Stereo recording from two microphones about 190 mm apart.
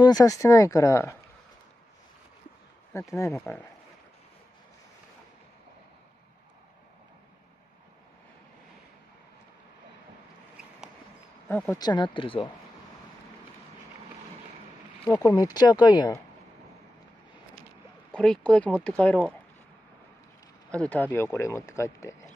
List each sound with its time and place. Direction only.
0.0 s speech: 20° left (ahead or behind)
2.9 s speech: 15° left (ahead or behind)
11.4 s speech: 10° left (ahead or behind)
11.8 s speech: 25° left (ahead or behind)
15.2 s speech: 20° left (ahead or behind)
18.1 s speech: 5° left (ahead or behind)
20.7 s speech: 5° left (ahead or behind)